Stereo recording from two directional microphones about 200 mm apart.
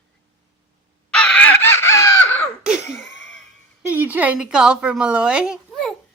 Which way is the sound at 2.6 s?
Centre (ahead or behind).